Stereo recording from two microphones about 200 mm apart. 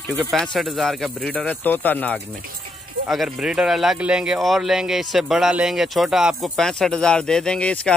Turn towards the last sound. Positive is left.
turn(degrees=5)  # may be behind; listen again after turning